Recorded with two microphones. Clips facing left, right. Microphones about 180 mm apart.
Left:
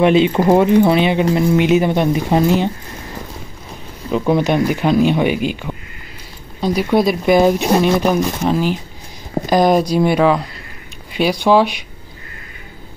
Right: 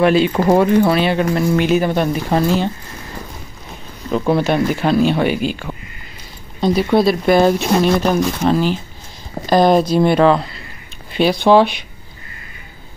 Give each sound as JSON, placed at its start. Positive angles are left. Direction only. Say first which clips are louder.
{"t": 0.0, "sound": "speech", "louder": "left 1 dB", "side_deg": 20}
{"t": 4.3, "sound": "speech", "louder": "left 1 dB", "side_deg": 15}